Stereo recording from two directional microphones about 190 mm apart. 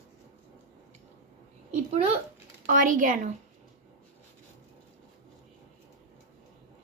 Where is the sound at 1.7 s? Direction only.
35° right (ahead or behind).